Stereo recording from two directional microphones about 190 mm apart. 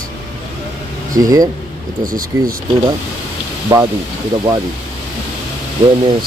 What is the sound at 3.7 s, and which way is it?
Speech, 20° right (ahead or behind).